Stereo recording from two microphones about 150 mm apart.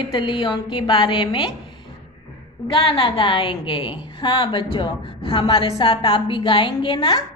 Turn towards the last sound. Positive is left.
turn(degrees=35)  # may be behind; listen again after turning